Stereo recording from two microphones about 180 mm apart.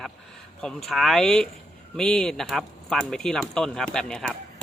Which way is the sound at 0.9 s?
Centre (ahead or behind).